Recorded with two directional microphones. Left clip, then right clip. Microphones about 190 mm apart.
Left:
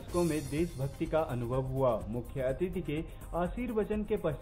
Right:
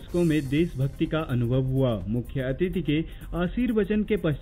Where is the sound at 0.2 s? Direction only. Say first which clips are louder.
Right 8 dB; 25° right (ahead or behind).